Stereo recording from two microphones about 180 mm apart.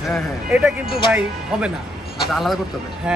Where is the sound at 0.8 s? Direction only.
30° left (ahead or behind).